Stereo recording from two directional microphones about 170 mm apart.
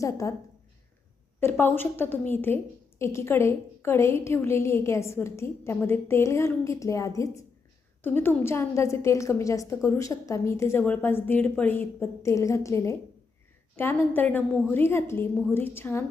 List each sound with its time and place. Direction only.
0.0 s a woman's voice: 20° left (ahead or behind)
1.4 s a woman's voice: 15° left (ahead or behind)